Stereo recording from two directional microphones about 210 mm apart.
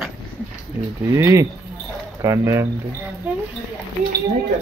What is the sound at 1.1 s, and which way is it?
Speech, 15° right (ahead or behind).